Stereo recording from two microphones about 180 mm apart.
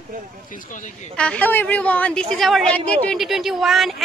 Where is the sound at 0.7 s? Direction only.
45° left (ahead or behind).